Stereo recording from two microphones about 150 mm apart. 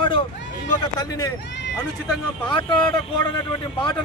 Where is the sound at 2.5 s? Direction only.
30° left (ahead or behind).